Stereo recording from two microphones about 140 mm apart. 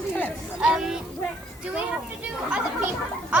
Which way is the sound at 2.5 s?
10° right (ahead or behind).